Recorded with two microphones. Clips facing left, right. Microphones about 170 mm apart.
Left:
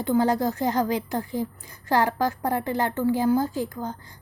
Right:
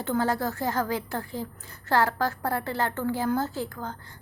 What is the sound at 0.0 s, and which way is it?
A woman's voice, 15° left (ahead or behind).